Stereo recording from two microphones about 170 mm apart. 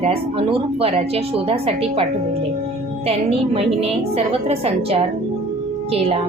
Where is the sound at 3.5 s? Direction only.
35° right (ahead or behind).